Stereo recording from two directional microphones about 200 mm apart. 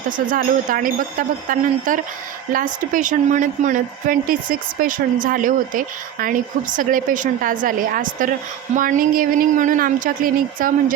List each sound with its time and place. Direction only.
0.3 s a woman's voice: 45° right (ahead or behind)